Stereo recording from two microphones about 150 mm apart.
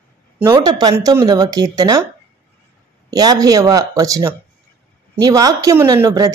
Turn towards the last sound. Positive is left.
turn(degrees=-25)  # may be behind; listen again after turning